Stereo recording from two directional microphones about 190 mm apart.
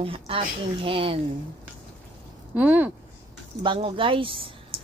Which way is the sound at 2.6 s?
5° right (ahead or behind).